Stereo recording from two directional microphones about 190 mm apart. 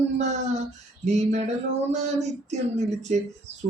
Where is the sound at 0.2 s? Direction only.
35° right (ahead or behind).